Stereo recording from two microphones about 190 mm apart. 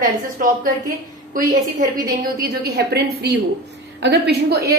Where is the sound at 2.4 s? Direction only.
55° right (ahead or behind).